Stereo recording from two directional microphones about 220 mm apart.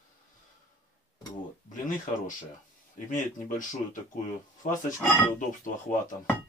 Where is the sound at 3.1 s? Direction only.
35° left (ahead or behind).